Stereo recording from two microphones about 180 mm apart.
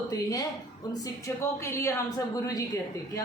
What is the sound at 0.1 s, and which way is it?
A woman's voice, 20° left (ahead or behind).